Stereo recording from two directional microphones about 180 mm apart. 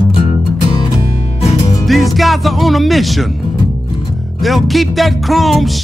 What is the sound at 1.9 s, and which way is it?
Music, centre (ahead or behind).